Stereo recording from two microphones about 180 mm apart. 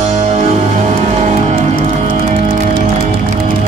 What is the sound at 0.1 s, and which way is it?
Music, 40° right (ahead or behind).